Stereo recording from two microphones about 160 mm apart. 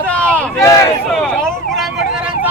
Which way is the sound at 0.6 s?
20° left (ahead or behind).